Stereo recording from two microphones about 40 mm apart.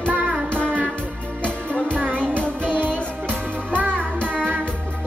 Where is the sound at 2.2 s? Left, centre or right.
Left.